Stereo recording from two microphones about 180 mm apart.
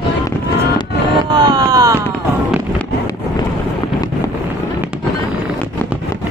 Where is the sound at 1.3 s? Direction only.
20° right (ahead or behind).